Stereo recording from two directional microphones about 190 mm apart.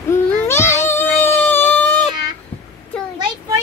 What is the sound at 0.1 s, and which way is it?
Baby cry, 15° left (ahead or behind).